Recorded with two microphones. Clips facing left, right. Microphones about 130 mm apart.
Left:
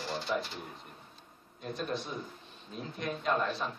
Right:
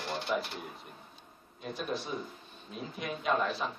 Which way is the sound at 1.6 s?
5° right (ahead or behind).